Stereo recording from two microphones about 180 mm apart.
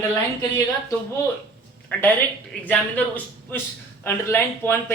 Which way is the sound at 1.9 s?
10° left (ahead or behind).